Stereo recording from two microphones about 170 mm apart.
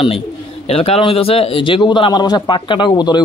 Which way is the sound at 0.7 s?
35° left (ahead or behind).